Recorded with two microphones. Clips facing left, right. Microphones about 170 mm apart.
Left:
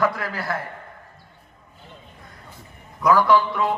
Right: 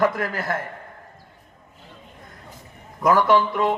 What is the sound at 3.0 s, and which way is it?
Speech, 45° right (ahead or behind).